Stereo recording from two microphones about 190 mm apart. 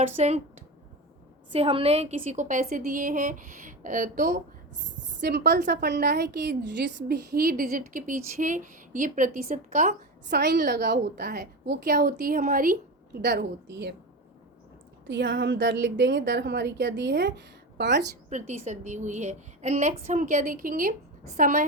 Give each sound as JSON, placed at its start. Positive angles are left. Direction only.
{"t": 0.0, "sound": "a woman's voice", "side_deg": -35}
{"t": 1.5, "sound": "a woman's voice", "side_deg": -30}
{"t": 5.2, "sound": "a woman's voice", "side_deg": -60}
{"t": 10.2, "sound": "a woman's voice", "side_deg": -60}
{"t": 13.1, "sound": "a woman's voice", "side_deg": -60}
{"t": 15.0, "sound": "a woman's voice", "side_deg": -80}
{"t": 18.3, "sound": "a woman's voice", "side_deg": -40}